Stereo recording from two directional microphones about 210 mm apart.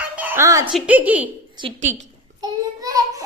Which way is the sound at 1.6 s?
20° right (ahead or behind).